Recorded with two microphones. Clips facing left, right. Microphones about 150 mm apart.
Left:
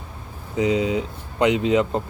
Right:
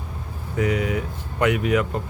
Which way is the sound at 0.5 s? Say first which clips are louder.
Left 3 dB; 20° left (ahead or behind).